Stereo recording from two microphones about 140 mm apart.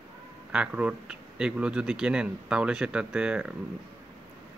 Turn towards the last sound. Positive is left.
turn(degrees=-5)  # may be behind; listen again after turning